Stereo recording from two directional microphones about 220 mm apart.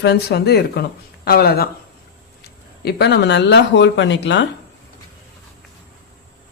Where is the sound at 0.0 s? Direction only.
50° left (ahead or behind).